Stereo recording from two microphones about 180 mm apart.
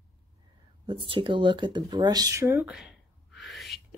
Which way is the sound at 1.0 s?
30° right (ahead or behind).